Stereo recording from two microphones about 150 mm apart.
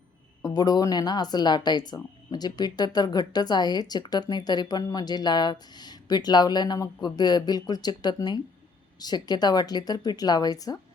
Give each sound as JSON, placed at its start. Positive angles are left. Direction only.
{"t": 0.4, "sound": "speech", "side_deg": 25}